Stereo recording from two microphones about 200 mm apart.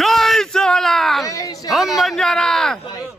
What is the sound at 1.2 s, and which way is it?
Speech, 20° left (ahead or behind).